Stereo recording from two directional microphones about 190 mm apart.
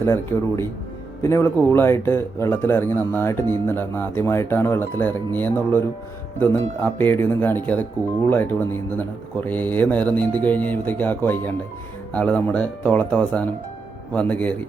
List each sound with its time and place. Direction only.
0.0 s a man's voice: 15° left (ahead or behind)
6.8 s a man's voice: 10° left (ahead or behind)